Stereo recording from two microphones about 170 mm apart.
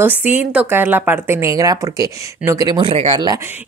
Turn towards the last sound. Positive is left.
turn(degrees=-25)  # may be behind; listen again after turning